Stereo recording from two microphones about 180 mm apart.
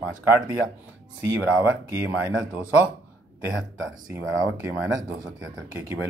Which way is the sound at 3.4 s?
15° right (ahead or behind).